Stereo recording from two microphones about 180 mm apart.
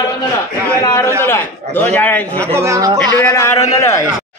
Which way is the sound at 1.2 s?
15° left (ahead or behind).